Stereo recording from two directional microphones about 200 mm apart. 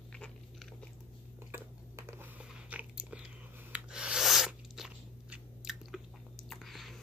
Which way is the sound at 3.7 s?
5° right (ahead or behind).